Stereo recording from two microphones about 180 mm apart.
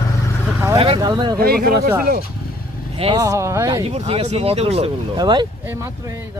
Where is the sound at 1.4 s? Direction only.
55° right (ahead or behind).